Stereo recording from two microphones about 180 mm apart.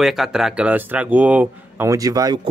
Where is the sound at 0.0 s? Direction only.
Centre (ahead or behind).